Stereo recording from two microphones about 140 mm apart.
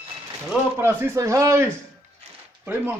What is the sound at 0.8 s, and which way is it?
A man's voice, 15° right (ahead or behind).